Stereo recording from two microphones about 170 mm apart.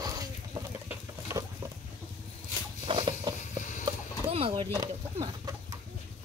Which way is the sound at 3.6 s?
50° left (ahead or behind).